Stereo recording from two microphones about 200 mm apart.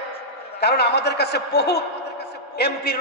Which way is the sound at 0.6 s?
55° left (ahead or behind).